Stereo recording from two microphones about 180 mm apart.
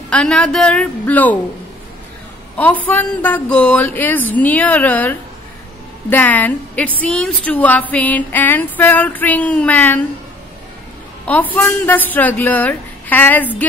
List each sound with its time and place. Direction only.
0.1 s a woman's voice: 5° left (ahead or behind)
2.5 s a woman's voice: 10° left (ahead or behind)
2.9 s female singing: 10° left (ahead or behind)
11.2 s female singing: 10° left (ahead or behind)